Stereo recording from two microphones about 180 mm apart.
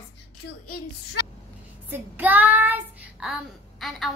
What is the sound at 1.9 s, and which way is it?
Child singing, 10° right (ahead or behind).